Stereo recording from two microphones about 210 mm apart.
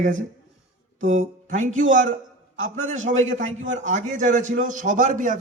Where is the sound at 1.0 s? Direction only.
35° right (ahead or behind).